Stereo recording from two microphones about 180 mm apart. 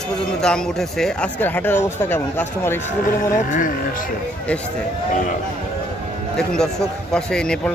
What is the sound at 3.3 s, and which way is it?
Speech, 50° left (ahead or behind).